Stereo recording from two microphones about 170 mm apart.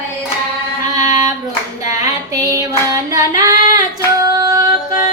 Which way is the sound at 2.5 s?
20° right (ahead or behind).